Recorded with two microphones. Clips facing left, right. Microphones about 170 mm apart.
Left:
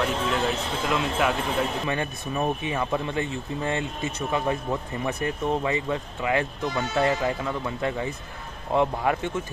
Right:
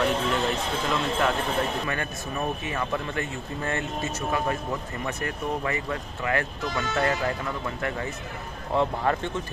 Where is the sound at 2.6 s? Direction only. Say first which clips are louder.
Left 3 dB; 15° left (ahead or behind).